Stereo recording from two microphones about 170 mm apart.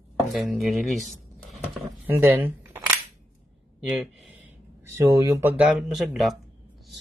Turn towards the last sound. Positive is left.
turn(degrees=0)  # may be behind; listen again after turning